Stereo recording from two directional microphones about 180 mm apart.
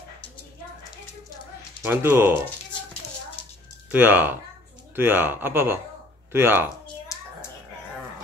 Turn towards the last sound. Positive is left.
turn(degrees=-15)  # may be behind; listen again after turning